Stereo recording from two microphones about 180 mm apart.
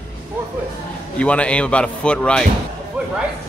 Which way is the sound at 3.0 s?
10° right (ahead or behind).